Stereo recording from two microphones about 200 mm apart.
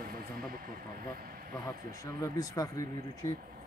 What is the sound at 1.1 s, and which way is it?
Speech, 45° right (ahead or behind).